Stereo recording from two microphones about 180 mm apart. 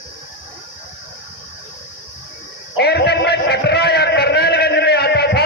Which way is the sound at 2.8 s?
65° left (ahead or behind).